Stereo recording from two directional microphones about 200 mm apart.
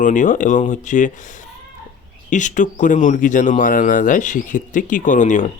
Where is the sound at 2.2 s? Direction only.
40° left (ahead or behind).